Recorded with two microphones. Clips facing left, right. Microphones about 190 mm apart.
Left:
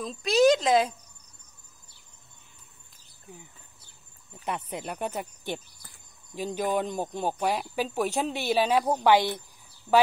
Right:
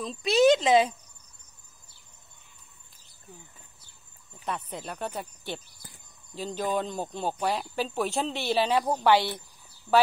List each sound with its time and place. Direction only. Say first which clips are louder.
0.0 s speech: even; centre (ahead or behind)
4.3 s speech: left 1 dB; 20° left (ahead or behind)
6.3 s speech: left 2 dB; 15° left (ahead or behind)